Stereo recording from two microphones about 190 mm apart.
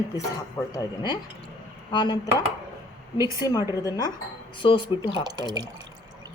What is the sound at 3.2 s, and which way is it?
Speech, 15° right (ahead or behind).